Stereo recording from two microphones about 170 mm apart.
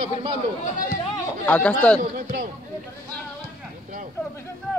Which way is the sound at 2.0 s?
55° right (ahead or behind).